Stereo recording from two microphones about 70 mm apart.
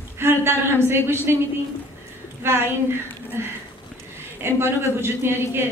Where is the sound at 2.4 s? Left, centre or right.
Right.